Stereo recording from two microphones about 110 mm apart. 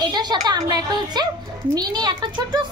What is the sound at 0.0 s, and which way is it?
A woman's voice, 40° right (ahead or behind).